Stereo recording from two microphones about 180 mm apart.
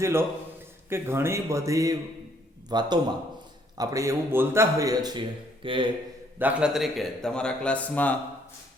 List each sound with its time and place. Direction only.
0.0 s a man's voice: 15° right (ahead or behind)
6.4 s a man's voice: 5° right (ahead or behind)